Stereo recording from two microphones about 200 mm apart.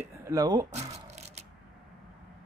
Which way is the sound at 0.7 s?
35° right (ahead or behind).